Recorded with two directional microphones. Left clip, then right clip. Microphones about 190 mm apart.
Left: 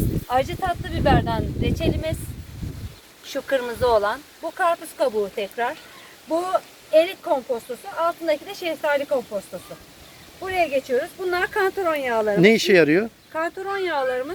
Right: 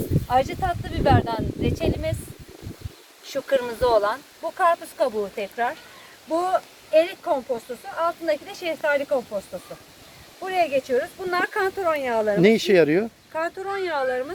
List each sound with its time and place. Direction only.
0.3 s speech: 5° right (ahead or behind)
3.2 s speech: 15° right (ahead or behind)
4.9 s speech: 10° left (ahead or behind)
9.0 s speech: 5° left (ahead or behind)
10.4 s speech: centre (ahead or behind)
12.4 s speech: 5° right (ahead or behind)